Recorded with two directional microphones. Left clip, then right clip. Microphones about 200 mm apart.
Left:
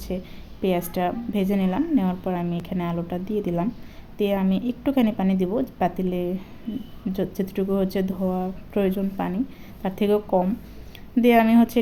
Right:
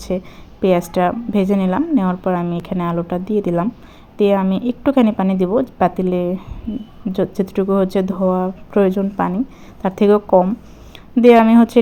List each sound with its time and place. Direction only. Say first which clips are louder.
0.1 s a woman's voice: right 9 dB; 20° right (ahead or behind)